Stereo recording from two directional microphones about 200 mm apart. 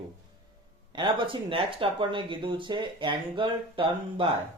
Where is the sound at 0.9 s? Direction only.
25° right (ahead or behind).